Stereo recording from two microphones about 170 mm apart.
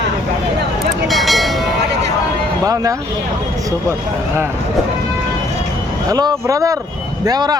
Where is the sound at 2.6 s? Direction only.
20° right (ahead or behind).